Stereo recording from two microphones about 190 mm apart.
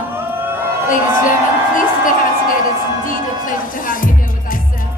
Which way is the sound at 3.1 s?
45° left (ahead or behind).